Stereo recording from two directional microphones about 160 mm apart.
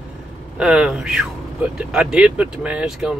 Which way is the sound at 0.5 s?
5° right (ahead or behind).